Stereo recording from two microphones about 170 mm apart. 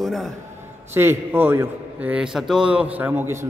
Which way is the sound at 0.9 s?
10° right (ahead or behind).